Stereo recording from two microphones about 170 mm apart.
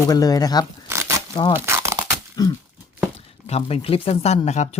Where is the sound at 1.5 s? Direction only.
15° right (ahead or behind).